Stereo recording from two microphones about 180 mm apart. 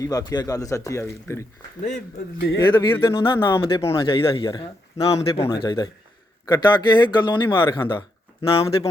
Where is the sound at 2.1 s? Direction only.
65° left (ahead or behind).